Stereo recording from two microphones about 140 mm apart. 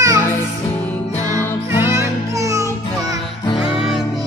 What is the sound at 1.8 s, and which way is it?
Music, 20° right (ahead or behind).